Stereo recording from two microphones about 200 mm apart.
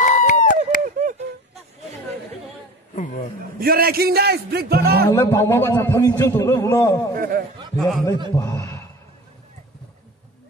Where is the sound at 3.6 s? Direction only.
50° right (ahead or behind).